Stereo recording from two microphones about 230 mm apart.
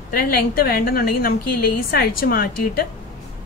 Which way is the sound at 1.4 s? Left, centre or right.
Left.